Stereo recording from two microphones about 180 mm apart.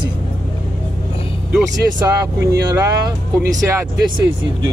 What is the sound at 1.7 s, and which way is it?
Speech, 20° right (ahead or behind).